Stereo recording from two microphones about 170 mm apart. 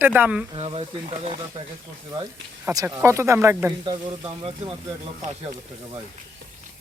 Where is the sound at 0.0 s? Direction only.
10° right (ahead or behind).